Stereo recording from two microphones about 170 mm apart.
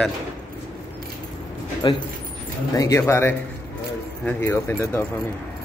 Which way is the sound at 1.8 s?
30° left (ahead or behind).